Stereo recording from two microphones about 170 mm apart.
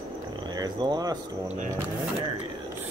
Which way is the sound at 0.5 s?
25° right (ahead or behind).